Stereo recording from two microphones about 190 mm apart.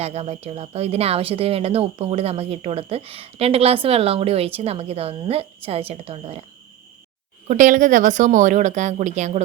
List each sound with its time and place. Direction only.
0.0 s a woman's voice: 35° right (ahead or behind)
7.4 s a woman's voice: 40° right (ahead or behind)